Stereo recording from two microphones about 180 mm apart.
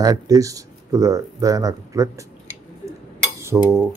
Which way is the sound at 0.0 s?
20° right (ahead or behind).